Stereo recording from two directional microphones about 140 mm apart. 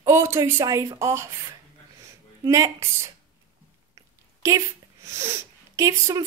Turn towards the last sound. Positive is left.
turn(degrees=-20)  # may be behind; listen again after turning